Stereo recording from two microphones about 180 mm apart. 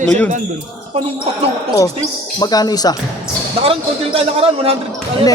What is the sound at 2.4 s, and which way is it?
Speech, 20° left (ahead or behind).